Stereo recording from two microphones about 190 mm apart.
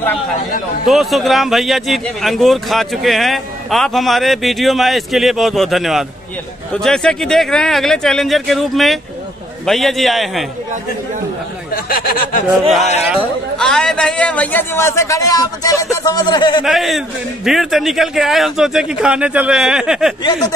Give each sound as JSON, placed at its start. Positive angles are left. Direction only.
{"t": 0.8, "sound": "a man's voice", "side_deg": 0}
{"t": 11.7, "sound": "speech", "side_deg": 50}
{"t": 13.6, "sound": "a man's voice", "side_deg": 5}
{"t": 16.6, "sound": "a man's voice", "side_deg": 0}